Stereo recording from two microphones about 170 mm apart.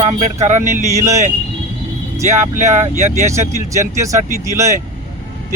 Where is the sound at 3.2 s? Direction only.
15° right (ahead or behind).